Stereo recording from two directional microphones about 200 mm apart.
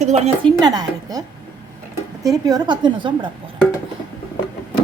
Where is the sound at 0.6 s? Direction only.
20° right (ahead or behind).